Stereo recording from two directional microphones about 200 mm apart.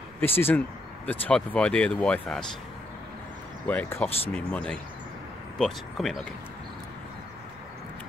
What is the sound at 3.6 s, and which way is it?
Speech, 10° left (ahead or behind).